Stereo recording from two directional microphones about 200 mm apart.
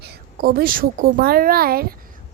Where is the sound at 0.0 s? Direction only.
50° right (ahead or behind).